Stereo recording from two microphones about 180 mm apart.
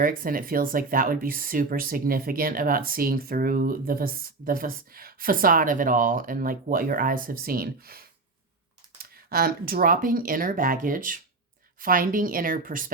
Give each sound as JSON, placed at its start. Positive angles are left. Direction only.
{"t": 0.0, "sound": "speech", "side_deg": -50}